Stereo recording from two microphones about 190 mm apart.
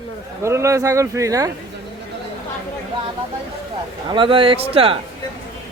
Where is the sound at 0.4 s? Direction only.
15° right (ahead or behind).